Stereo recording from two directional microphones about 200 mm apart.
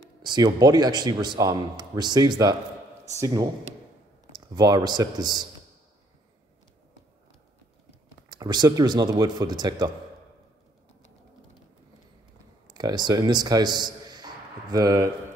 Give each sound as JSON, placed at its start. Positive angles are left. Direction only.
{"t": 0.2, "sound": "a man's voice", "side_deg": -20}
{"t": 8.3, "sound": "a man's voice", "side_deg": -20}
{"t": 12.6, "sound": "a man's voice", "side_deg": -20}